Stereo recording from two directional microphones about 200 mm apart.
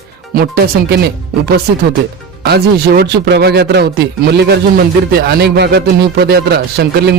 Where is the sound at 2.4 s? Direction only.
50° right (ahead or behind).